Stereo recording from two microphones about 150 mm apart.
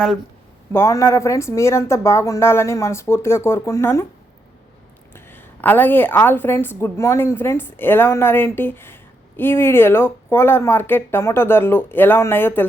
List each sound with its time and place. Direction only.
0.7 s a woman's voice: 20° left (ahead or behind)
5.1 s a woman's voice: 15° left (ahead or behind)